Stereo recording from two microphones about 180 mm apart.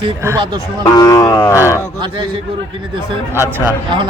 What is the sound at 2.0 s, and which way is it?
Speech, 25° right (ahead or behind).